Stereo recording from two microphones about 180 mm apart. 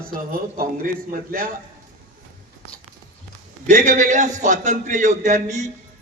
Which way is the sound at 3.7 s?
45° right (ahead or behind).